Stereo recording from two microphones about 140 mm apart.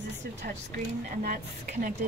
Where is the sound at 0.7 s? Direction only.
80° right.